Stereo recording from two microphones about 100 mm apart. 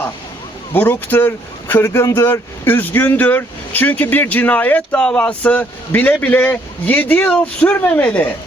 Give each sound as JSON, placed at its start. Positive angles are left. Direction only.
{"t": 0.7, "sound": "speech", "side_deg": 20}